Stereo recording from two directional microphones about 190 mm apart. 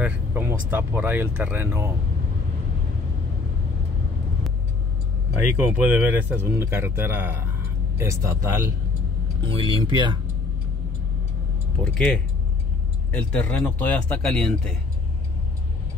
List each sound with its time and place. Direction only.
0.0 s speech: 10° right (ahead or behind)
5.6 s speech: 10° right (ahead or behind)
9.4 s speech: 25° right (ahead or behind)
11.8 s speech: 5° left (ahead or behind)